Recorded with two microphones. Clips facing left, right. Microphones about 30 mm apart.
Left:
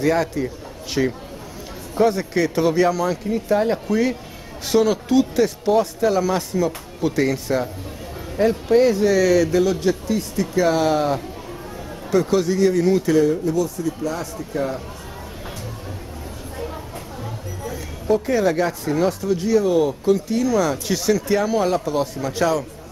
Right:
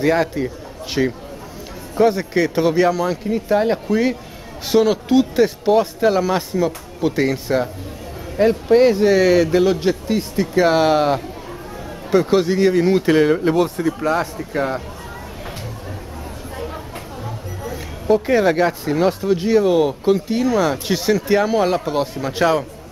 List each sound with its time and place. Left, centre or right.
0.0 s speech: right
16.6 s a sound: centre
18.0 s speech: right